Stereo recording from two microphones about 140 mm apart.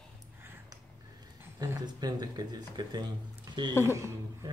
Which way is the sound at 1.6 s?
25° right (ahead or behind).